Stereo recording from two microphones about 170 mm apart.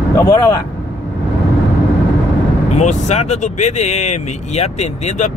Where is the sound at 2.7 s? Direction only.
45° left (ahead or behind).